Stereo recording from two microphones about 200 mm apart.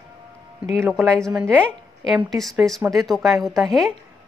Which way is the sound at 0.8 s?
Centre (ahead or behind).